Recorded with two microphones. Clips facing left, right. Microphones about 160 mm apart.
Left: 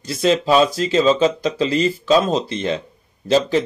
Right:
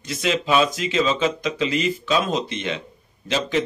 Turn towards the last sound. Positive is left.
turn(degrees=35)  # may be behind; listen again after turning